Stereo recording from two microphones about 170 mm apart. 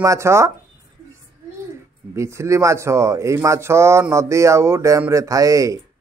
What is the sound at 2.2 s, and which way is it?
Speech, 15° right (ahead or behind).